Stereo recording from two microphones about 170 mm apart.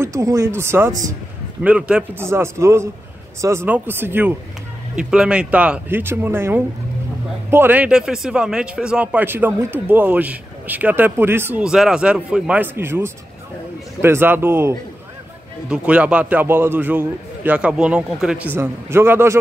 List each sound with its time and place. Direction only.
0.0 s speech: 20° right (ahead or behind)
1.6 s speech: 5° right (ahead or behind)
15.7 s speech: 5° right (ahead or behind)